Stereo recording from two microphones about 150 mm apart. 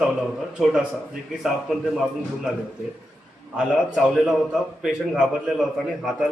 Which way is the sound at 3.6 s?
Centre (ahead or behind).